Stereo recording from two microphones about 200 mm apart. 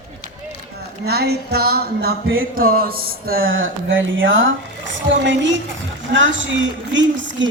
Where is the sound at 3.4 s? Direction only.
80° right.